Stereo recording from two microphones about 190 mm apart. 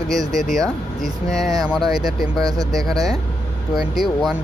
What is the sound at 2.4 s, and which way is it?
Speech, 20° right (ahead or behind).